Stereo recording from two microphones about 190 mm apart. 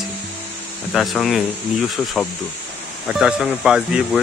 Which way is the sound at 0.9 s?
Centre (ahead or behind).